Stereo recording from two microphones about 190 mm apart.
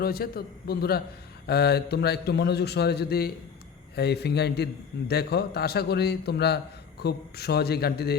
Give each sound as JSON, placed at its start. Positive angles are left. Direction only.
{"t": 0.0, "sound": "a man's voice", "side_deg": 55}